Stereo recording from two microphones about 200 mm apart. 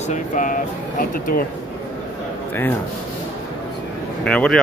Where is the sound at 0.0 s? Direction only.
40° left (ahead or behind).